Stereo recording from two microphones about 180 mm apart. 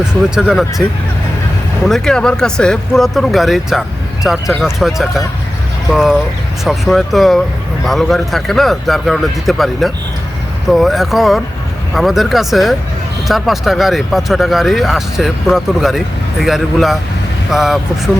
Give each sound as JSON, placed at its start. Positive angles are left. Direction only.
{"t": 0.0, "sound": "speech", "side_deg": -5}
{"t": 1.9, "sound": "speech", "side_deg": 5}